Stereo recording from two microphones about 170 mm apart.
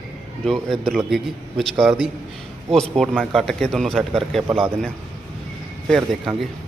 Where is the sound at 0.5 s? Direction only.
Centre (ahead or behind).